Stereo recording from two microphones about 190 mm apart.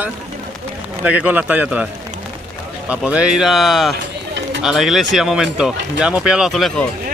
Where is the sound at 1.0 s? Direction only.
5° right (ahead or behind).